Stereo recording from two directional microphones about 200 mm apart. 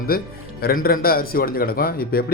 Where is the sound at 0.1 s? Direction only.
50° left (ahead or behind).